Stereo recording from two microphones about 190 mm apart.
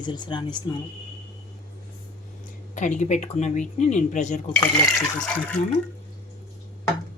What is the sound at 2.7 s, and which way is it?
Speech, 40° left (ahead or behind).